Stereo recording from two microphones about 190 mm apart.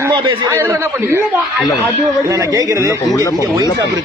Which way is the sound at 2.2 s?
15° right (ahead or behind).